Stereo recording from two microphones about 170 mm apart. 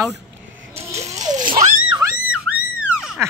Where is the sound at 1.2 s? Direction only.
25° right (ahead or behind).